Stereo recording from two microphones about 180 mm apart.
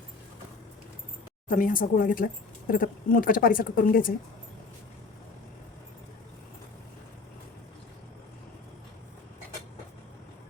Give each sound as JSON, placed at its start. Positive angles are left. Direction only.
{"t": 1.5, "sound": "speech", "side_deg": 50}